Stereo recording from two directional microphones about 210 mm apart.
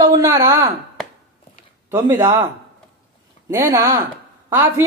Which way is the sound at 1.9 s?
10° right (ahead or behind).